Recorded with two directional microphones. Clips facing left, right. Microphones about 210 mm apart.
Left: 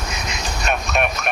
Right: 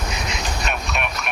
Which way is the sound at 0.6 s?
45° left (ahead or behind).